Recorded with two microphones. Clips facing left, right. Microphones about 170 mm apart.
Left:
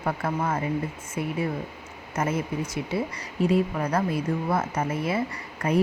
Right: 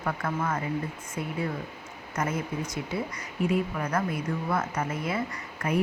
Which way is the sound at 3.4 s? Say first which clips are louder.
Left 4 dB; 35° left (ahead or behind).